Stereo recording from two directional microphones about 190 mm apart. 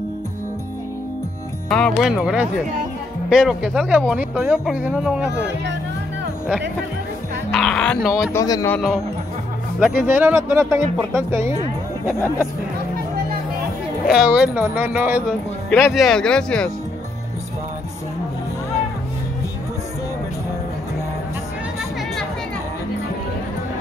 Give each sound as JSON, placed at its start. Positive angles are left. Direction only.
{"t": 1.7, "sound": "speech", "side_deg": 5}
{"t": 7.5, "sound": "speech", "side_deg": 5}
{"t": 8.3, "sound": "speech", "side_deg": 15}
{"t": 8.7, "sound": "speech", "side_deg": 0}
{"t": 12.1, "sound": "speech", "side_deg": 15}
{"t": 14.0, "sound": "speech", "side_deg": -5}
{"t": 15.2, "sound": "speech", "side_deg": 5}